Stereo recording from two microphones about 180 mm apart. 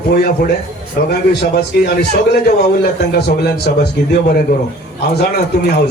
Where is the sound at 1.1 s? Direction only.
65° left (ahead or behind).